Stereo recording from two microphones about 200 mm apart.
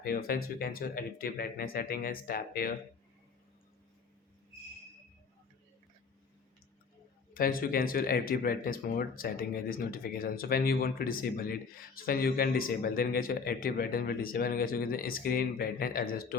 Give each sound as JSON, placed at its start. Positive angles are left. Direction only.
{"t": 0.0, "sound": "speech", "side_deg": 45}
{"t": 7.3, "sound": "speech", "side_deg": 45}